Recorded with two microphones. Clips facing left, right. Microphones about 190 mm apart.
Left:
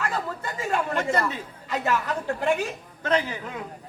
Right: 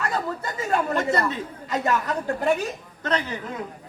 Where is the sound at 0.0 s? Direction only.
40° right (ahead or behind).